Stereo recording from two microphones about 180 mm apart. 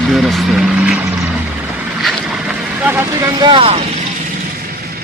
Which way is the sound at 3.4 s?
30° right (ahead or behind).